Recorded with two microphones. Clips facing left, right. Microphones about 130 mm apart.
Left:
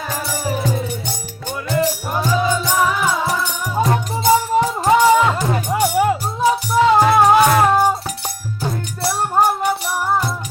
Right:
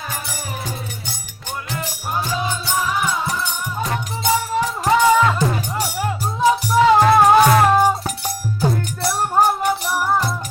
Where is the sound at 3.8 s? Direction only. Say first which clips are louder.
Left 7 dB; 35° left (ahead or behind).